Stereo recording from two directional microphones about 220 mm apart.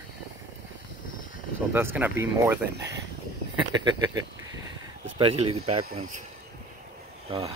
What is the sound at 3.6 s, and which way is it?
Speech, 20° right (ahead or behind).